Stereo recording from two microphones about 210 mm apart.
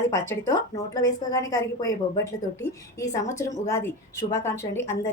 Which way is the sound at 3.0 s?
15° left (ahead or behind).